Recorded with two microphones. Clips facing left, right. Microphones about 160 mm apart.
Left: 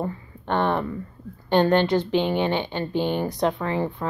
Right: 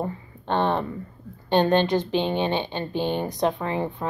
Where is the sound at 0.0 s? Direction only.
20° right (ahead or behind).